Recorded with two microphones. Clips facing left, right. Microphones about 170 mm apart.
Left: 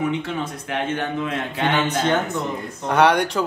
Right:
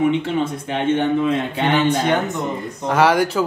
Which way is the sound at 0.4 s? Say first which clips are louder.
Right 4 dB; 25° right (ahead or behind).